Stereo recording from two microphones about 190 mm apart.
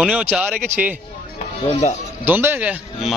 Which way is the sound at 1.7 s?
35° left (ahead or behind).